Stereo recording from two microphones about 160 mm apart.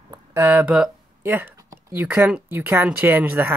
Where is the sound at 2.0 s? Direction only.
10° right (ahead or behind).